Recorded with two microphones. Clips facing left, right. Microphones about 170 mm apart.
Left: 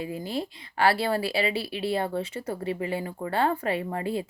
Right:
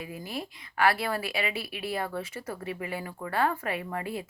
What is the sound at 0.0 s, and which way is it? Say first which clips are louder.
Speech: left 6 dB; 30° left (ahead or behind).